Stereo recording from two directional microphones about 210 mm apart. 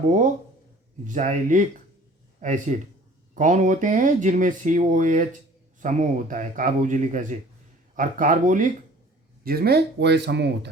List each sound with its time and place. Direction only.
1.0 s a man's voice: 35° right (ahead or behind); by 10.7 s 55° right (ahead or behind)